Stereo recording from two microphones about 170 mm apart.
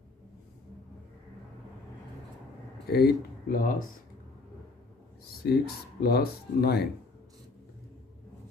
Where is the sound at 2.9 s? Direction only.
65° left (ahead or behind).